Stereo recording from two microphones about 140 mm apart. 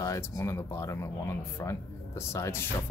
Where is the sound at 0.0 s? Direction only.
25° left (ahead or behind).